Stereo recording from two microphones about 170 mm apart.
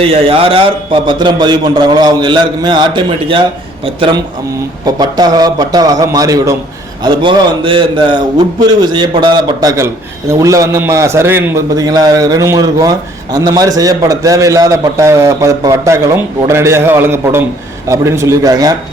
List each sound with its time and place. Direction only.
0.0 s a man's voice: 35° right (ahead or behind)